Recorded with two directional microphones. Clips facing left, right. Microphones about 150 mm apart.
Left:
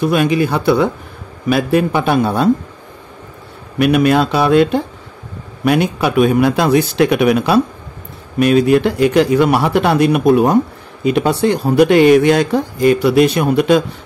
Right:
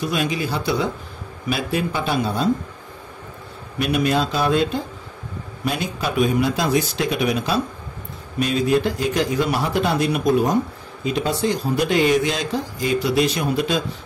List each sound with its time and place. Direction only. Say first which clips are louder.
0.0 s speech: left 9 dB; 60° left (ahead or behind)
3.7 s speech: left 8 dB; 65° left (ahead or behind)